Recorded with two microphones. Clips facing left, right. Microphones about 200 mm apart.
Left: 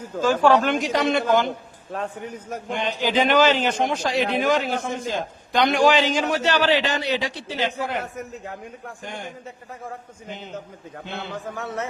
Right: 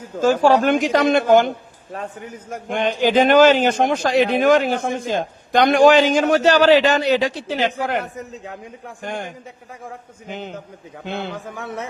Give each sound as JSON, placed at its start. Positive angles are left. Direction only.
{"t": 0.5, "sound": "a man's voice", "side_deg": -50}
{"t": 2.0, "sound": "a man's voice", "side_deg": -5}
{"t": 2.6, "sound": "a man's voice", "side_deg": -55}
{"t": 11.3, "sound": "a man's voice", "side_deg": -15}